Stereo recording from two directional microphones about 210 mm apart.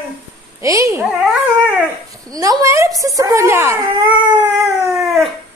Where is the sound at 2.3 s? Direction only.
15° right (ahead or behind).